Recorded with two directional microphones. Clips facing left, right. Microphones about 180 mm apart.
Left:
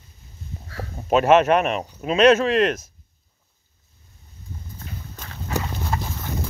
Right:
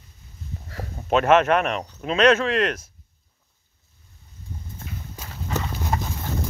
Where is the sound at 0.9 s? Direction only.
10° left (ahead or behind).